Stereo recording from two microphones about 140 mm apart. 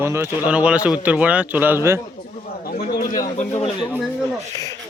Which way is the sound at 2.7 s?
90° left.